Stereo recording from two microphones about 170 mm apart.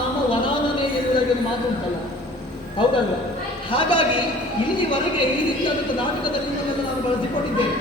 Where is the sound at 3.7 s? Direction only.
30° left (ahead or behind).